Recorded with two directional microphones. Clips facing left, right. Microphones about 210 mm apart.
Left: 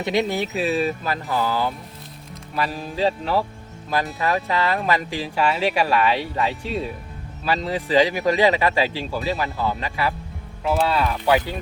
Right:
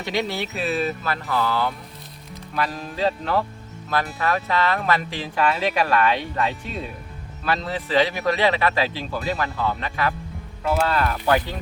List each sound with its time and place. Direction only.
0.0 s speech: 15° left (ahead or behind)
2.7 s speech: 10° left (ahead or behind)
7.4 s speech: 10° left (ahead or behind)